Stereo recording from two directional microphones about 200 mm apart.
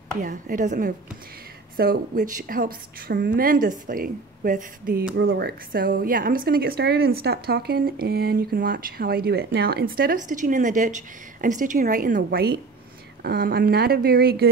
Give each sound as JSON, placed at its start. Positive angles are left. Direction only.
{"t": 0.2, "sound": "a woman's voice", "side_deg": -40}
{"t": 5.1, "sound": "speech", "side_deg": -55}